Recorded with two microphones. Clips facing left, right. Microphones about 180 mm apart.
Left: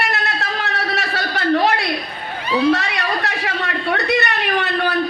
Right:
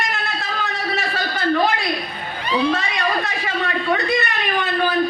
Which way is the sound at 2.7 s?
70° left (ahead or behind).